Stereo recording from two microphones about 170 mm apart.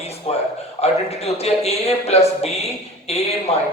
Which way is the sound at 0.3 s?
40° left (ahead or behind).